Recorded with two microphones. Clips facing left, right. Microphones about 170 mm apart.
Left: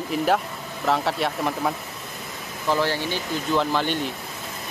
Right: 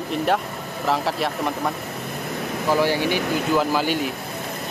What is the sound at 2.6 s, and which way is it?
Speech, 15° right (ahead or behind).